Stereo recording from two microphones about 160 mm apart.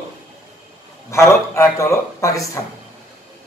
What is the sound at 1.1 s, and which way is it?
Speech, 15° left (ahead or behind).